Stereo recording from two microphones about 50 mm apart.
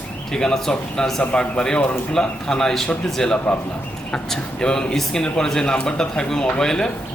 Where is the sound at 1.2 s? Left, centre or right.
Left.